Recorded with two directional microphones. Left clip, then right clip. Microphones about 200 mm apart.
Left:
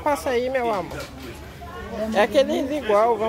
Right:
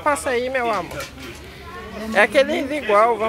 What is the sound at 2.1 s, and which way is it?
Speech, centre (ahead or behind).